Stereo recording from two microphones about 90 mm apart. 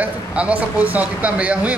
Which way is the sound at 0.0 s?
15° right (ahead or behind).